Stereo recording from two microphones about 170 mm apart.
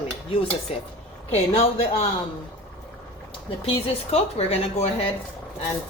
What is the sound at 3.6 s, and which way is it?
Speech, 35° left (ahead or behind).